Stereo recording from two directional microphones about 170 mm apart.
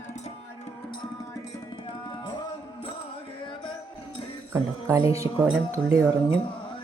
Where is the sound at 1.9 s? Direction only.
30° left (ahead or behind).